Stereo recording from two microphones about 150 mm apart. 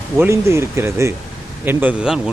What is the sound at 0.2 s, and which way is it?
Speech, 15° right (ahead or behind).